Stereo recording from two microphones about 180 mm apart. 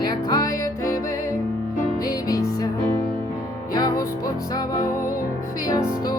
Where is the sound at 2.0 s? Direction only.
20° left (ahead or behind).